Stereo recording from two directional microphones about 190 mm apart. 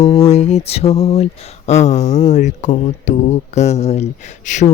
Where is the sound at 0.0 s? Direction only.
35° left (ahead or behind).